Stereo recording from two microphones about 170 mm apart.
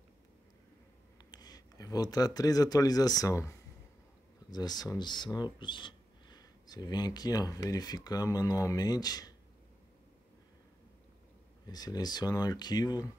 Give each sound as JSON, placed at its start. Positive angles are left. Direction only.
{"t": 1.3, "sound": "speech", "side_deg": 25}
{"t": 11.6, "sound": "speech", "side_deg": 25}